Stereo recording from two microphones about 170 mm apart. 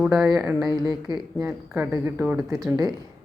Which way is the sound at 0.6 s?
25° right (ahead or behind).